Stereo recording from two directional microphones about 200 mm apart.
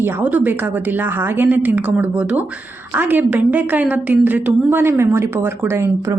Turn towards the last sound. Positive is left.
turn(degrees=-15)  # may be behind; listen again after turning